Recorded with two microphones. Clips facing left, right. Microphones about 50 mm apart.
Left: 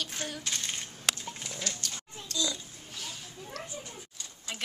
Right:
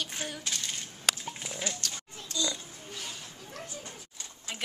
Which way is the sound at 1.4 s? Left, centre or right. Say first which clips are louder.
Right 2 dB; centre.